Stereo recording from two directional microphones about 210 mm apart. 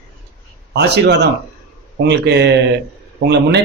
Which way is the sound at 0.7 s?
50° right (ahead or behind).